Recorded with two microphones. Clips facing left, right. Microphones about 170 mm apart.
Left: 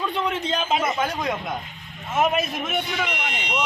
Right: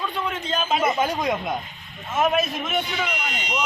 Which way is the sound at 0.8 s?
20° right (ahead or behind).